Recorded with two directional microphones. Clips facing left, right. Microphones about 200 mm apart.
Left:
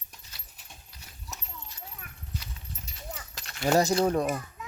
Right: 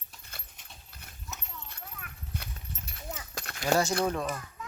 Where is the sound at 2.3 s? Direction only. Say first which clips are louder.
Even; 55° right (ahead or behind).